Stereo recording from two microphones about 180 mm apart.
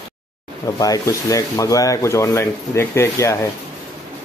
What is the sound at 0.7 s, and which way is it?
Speech, 20° left (ahead or behind).